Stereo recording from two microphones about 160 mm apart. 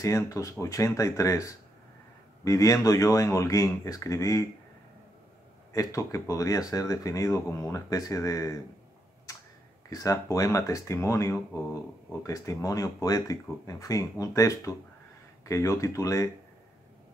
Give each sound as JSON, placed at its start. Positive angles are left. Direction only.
{"t": 0.0, "sound": "speech", "side_deg": 20}
{"t": 5.7, "sound": "speech", "side_deg": 20}
{"t": 9.8, "sound": "speech", "side_deg": 20}